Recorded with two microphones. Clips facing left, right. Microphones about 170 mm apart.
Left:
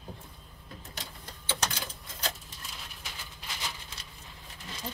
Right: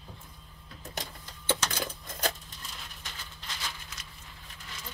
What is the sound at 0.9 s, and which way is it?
Sewing machine, 50° right (ahead or behind).